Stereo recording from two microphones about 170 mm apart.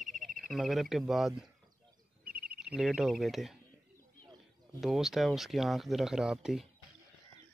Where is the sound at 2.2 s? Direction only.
60° right (ahead or behind).